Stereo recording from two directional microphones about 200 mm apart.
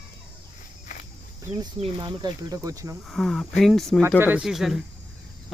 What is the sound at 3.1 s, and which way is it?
Speech, centre (ahead or behind).